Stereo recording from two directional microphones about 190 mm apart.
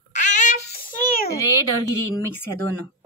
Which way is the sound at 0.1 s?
40° left (ahead or behind).